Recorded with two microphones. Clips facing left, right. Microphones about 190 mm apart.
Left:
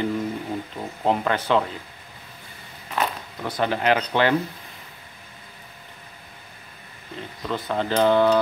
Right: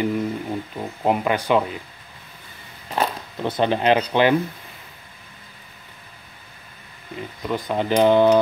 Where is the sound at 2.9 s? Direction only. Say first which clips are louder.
Right 3 dB; 25° right (ahead or behind).